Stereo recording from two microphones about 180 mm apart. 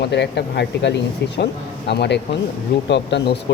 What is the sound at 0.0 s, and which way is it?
Speech, 70° left (ahead or behind).